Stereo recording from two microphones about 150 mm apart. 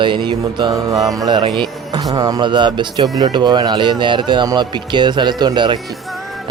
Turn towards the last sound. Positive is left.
turn(degrees=-30)  # may be behind; listen again after turning